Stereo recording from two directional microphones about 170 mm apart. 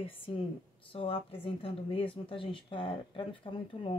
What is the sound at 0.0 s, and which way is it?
Speech, 30° left (ahead or behind).